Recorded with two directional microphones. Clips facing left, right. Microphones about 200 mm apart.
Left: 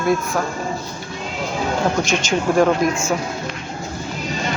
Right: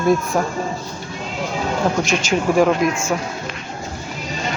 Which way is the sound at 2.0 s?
Centre (ahead or behind).